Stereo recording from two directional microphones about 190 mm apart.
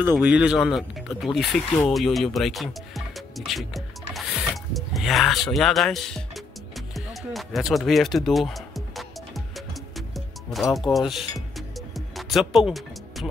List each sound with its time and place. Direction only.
0.0 s speech: 10° right (ahead or behind)
6.9 s music: centre (ahead or behind)